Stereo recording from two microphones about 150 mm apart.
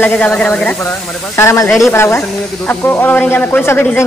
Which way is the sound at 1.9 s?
15° left (ahead or behind).